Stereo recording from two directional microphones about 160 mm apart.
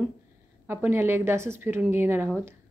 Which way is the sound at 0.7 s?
15° right (ahead or behind).